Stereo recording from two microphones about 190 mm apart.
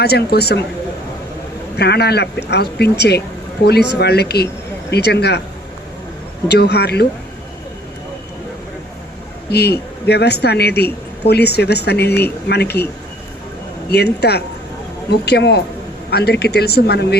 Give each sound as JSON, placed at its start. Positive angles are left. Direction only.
{"t": 0.0, "sound": "speech", "side_deg": 55}
{"t": 1.7, "sound": "speech", "side_deg": 60}
{"t": 6.5, "sound": "speech", "side_deg": 60}
{"t": 9.5, "sound": "speech", "side_deg": 60}
{"t": 13.9, "sound": "speech", "side_deg": 60}